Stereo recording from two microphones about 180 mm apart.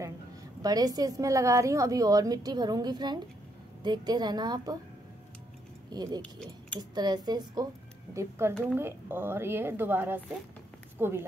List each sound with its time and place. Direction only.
0.6 s a woman's voice: 20° right (ahead or behind)
5.9 s a woman's voice: 20° right (ahead or behind)